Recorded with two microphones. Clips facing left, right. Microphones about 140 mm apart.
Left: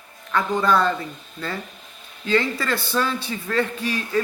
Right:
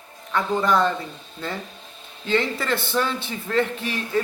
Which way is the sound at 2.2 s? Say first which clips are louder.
Left 1 dB; 25° right (ahead or behind).